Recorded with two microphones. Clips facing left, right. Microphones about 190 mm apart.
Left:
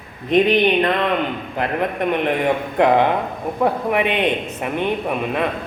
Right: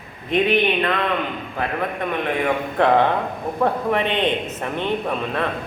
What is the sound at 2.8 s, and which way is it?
A man's voice, 15° left (ahead or behind).